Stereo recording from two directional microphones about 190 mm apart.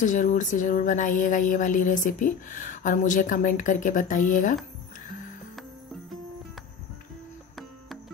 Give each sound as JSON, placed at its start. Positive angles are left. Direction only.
{"t": 0.0, "sound": "speech", "side_deg": 40}